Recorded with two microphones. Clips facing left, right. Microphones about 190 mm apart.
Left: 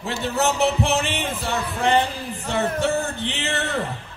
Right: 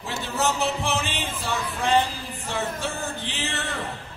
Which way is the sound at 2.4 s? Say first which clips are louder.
Left 7 dB; 65° left (ahead or behind).